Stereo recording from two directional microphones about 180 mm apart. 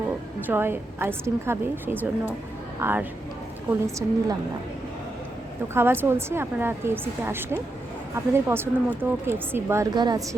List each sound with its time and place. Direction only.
0.4 s speech: 10° right (ahead or behind)
5.7 s speech: 10° right (ahead or behind)